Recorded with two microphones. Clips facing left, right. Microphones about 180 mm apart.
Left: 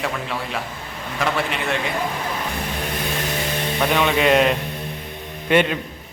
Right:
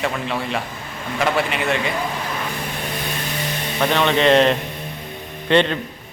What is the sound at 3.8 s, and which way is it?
A man's voice, 5° left (ahead or behind).